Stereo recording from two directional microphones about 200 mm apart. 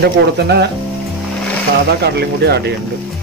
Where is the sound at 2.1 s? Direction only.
55° right (ahead or behind).